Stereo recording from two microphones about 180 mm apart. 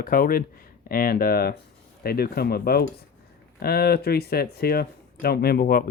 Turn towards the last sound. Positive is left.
turn(degrees=55)  # may be behind; listen again after turning